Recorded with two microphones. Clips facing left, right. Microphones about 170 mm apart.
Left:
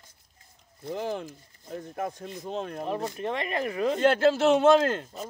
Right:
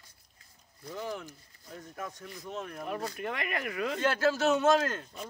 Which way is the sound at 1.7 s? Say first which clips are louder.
Left 8 dB; 30° left (ahead or behind).